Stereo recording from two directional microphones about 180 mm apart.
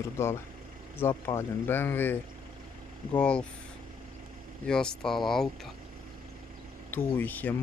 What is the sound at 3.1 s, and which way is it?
Speech, 5° left (ahead or behind).